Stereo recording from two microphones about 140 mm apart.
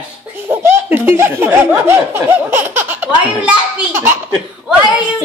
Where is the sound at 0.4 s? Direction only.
15° right (ahead or behind).